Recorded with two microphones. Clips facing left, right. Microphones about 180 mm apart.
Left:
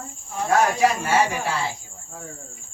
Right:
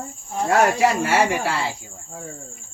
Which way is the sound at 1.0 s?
80° right.